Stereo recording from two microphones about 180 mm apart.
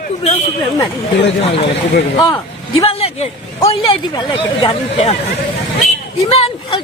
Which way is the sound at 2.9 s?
35° left (ahead or behind).